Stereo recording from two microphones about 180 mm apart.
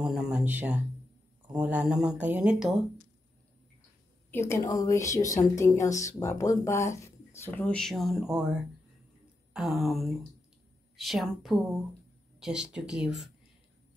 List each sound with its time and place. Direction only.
0.0 s speech: 5° right (ahead or behind)
4.3 s speech: 15° left (ahead or behind); by 8.5 s 5° right (ahead or behind)
9.5 s speech: centre (ahead or behind)